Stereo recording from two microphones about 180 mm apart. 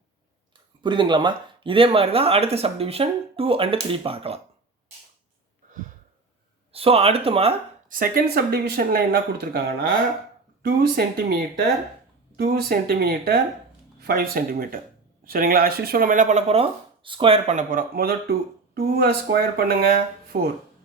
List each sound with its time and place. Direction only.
0.8 s speech: 25° right (ahead or behind)
6.7 s speech: 35° right (ahead or behind)
7.9 s speech: 50° right (ahead or behind)